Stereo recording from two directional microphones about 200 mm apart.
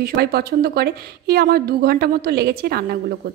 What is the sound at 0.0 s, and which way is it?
A woman's voice, 50° right (ahead or behind).